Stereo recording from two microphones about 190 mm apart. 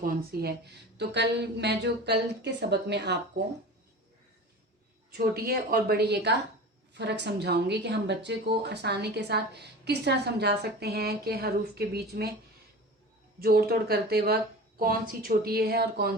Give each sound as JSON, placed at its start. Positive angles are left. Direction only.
{"t": 0.0, "sound": "a woman's voice", "side_deg": -55}
{"t": 5.1, "sound": "a woman's voice", "side_deg": -55}
{"t": 13.4, "sound": "a woman's voice", "side_deg": -55}